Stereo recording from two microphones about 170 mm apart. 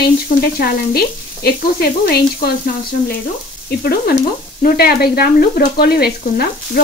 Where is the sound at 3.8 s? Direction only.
65° left (ahead or behind).